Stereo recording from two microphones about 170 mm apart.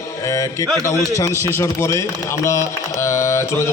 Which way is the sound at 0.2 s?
20° left (ahead or behind).